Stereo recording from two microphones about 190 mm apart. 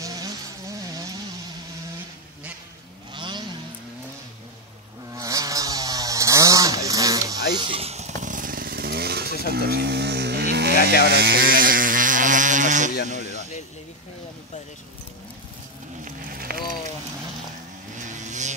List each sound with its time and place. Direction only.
0.0 s vehicle: 20° right (ahead or behind)
3.1 s vehicle: 25° right (ahead or behind)
5.1 s chainsaw: 15° right (ahead or behind); by 9.3 s 55° right (ahead or behind)
9.5 s sheep: 55° right (ahead or behind)
11.1 s vehicle: 55° right (ahead or behind); by 12.9 s 40° right (ahead or behind)
13.1 s a sound: 35° right (ahead or behind)
16.0 s a sound: 45° right (ahead or behind)
17.9 s vehicle: 40° right (ahead or behind)